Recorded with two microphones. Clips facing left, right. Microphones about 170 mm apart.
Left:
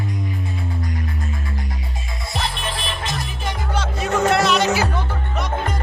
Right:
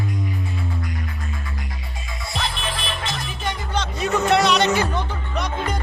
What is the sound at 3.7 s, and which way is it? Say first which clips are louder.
Music: left 1 dB; 5° left (ahead or behind).